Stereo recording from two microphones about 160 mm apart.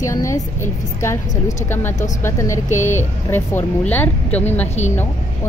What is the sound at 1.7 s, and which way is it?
A woman's voice, 15° left (ahead or behind).